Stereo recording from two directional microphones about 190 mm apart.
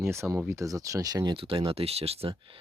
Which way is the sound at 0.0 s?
15° right (ahead or behind).